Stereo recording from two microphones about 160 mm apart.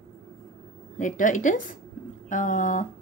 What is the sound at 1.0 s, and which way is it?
A woman's voice, 55° left (ahead or behind).